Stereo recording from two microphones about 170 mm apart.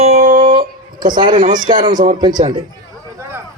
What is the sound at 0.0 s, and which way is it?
Music, 40° right (ahead or behind).